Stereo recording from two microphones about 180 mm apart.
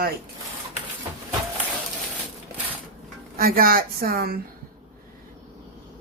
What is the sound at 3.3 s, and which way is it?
Speech, 55° right (ahead or behind).